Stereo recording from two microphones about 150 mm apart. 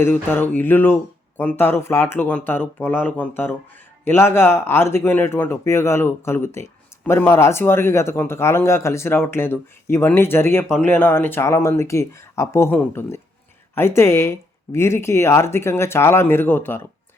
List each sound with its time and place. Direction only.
0.0 s speech: 15° left (ahead or behind)